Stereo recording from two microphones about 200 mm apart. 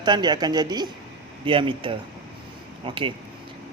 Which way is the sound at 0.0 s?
20° right (ahead or behind).